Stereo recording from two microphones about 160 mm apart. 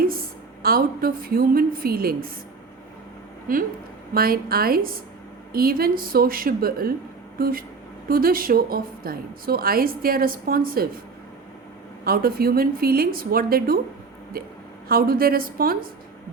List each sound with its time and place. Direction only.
0.0 s a woman's voice: 70° right (ahead or behind)
3.5 s a woman's voice: 65° right (ahead or behind)
12.0 s a woman's voice: 70° right (ahead or behind)